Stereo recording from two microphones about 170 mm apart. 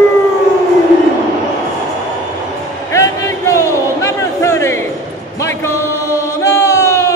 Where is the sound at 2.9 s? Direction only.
15° left (ahead or behind).